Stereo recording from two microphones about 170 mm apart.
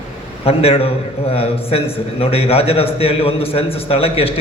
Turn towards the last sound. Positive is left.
turn(degrees=35)  # may be behind; listen again after turning